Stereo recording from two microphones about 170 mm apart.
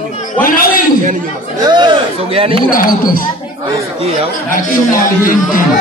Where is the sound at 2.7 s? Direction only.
55° left (ahead or behind).